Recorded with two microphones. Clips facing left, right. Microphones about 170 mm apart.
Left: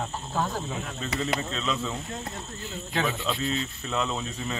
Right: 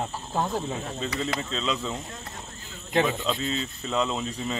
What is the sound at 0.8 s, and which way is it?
Speech, 30° right (ahead or behind).